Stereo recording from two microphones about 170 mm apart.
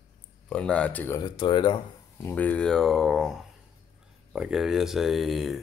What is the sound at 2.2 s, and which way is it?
Speech, 10° left (ahead or behind).